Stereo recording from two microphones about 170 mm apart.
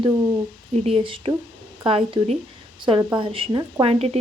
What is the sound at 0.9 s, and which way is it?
Speech, 30° right (ahead or behind).